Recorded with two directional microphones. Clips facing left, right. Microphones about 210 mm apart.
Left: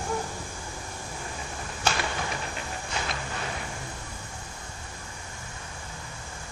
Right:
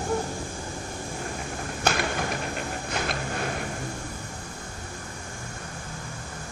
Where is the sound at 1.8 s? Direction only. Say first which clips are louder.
Right 3 dB; 50° right (ahead or behind).